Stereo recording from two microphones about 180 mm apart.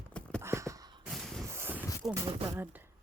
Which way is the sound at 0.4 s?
15° right (ahead or behind).